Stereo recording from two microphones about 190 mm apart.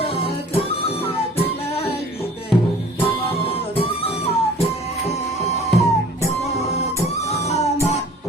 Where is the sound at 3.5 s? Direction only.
30° left (ahead or behind).